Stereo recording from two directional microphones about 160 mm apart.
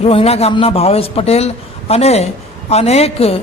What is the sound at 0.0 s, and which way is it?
A woman's voice, 40° left (ahead or behind).